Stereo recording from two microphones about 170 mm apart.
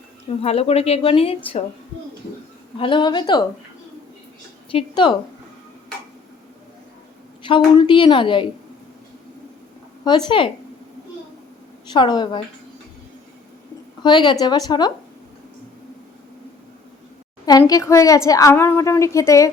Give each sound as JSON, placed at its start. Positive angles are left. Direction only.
{"t": 0.3, "sound": "a woman's voice", "side_deg": 35}
{"t": 2.7, "sound": "a woman's voice", "side_deg": 30}
{"t": 4.7, "sound": "a woman's voice", "side_deg": 30}
{"t": 7.4, "sound": "a woman's voice", "side_deg": 30}
{"t": 10.0, "sound": "a woman's voice", "side_deg": 25}
{"t": 11.9, "sound": "a woman's voice", "side_deg": 25}
{"t": 14.0, "sound": "a woman's voice", "side_deg": 25}
{"t": 17.4, "sound": "a woman's voice", "side_deg": 20}